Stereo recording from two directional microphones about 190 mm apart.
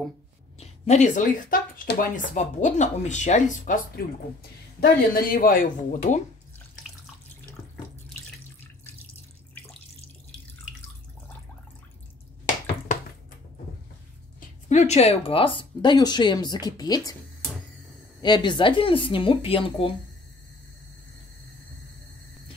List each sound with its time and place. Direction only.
0.6 s speech: 35° left (ahead or behind)
14.7 s speech: 35° left (ahead or behind); by 17.1 s 20° left (ahead or behind)
18.2 s speech: 25° left (ahead or behind)